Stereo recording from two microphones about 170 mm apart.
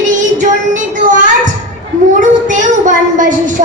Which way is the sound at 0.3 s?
50° right (ahead or behind).